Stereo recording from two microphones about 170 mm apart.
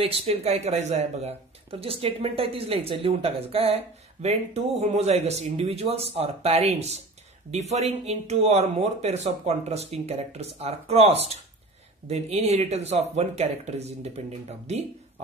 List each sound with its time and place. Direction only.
0.0 s speech: 35° right (ahead or behind)